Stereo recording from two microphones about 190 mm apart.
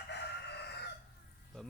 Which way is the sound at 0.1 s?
60° left (ahead or behind).